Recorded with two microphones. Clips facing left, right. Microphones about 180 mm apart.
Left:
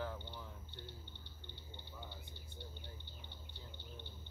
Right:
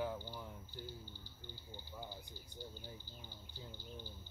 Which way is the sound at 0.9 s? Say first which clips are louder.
Right 3 dB; 65° left (ahead or behind).